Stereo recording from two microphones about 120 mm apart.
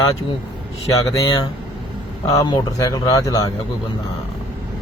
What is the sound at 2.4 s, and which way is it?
Speech, 30° left (ahead or behind).